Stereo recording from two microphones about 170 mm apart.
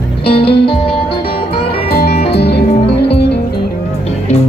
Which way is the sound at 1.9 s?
70° left (ahead or behind).